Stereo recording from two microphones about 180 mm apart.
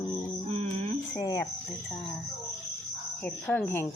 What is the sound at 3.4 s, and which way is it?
Speech, 10° left (ahead or behind).